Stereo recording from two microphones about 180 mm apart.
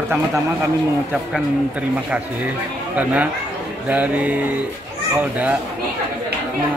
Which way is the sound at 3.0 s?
10° right (ahead or behind).